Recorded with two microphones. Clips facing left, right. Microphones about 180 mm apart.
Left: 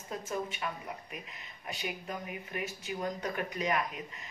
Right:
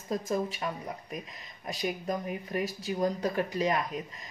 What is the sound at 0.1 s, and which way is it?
Speech, 35° right (ahead or behind).